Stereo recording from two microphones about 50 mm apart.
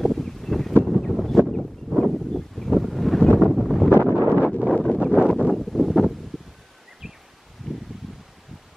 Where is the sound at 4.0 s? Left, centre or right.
Right.